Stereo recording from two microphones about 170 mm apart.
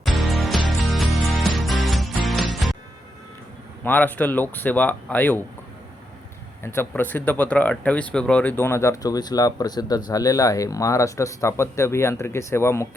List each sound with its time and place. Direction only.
0.0 s music: centre (ahead or behind)
3.8 s speech: 10° left (ahead or behind)
6.6 s speech: 15° left (ahead or behind)